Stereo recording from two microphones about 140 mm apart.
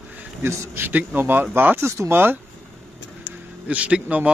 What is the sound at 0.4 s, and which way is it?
A man's voice, 20° right (ahead or behind).